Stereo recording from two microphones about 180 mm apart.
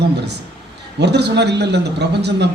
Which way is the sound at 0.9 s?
70° right (ahead or behind).